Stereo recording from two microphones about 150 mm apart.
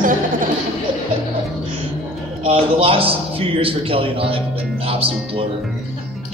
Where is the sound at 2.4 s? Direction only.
40° right (ahead or behind).